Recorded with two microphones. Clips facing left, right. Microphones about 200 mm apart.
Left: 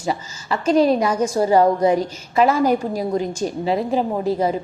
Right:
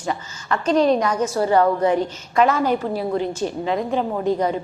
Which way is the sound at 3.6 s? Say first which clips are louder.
Left 3 dB; 35° left (ahead or behind).